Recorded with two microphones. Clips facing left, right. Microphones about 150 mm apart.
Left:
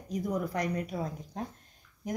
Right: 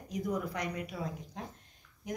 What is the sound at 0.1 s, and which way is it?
Speech, 35° left (ahead or behind).